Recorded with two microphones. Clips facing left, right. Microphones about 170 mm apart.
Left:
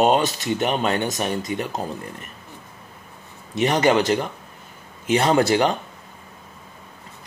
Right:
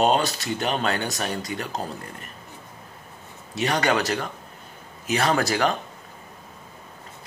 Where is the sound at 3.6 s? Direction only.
25° left (ahead or behind).